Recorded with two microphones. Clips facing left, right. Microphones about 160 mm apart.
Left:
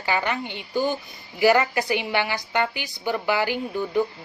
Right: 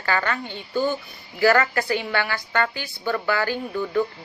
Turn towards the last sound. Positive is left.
turn(degrees=15)  # may be behind; listen again after turning